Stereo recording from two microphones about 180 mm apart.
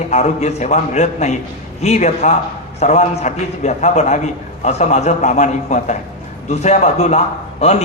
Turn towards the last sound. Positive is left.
turn(degrees=40)  # may be behind; listen again after turning